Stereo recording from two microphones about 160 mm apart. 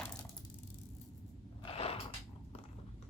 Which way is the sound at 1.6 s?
40° left (ahead or behind).